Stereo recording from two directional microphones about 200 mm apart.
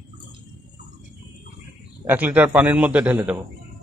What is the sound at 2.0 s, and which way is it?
Speech, 10° right (ahead or behind).